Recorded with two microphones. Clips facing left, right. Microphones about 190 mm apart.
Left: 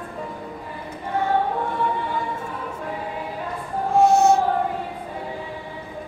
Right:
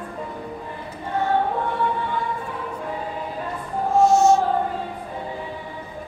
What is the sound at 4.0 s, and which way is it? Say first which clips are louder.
Music: even; 60° left (ahead or behind).